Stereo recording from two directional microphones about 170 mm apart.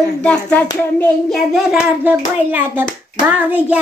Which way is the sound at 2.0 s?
10° right (ahead or behind).